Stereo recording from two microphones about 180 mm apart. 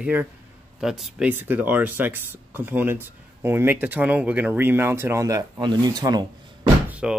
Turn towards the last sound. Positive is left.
turn(degrees=-5)  # may be behind; listen again after turning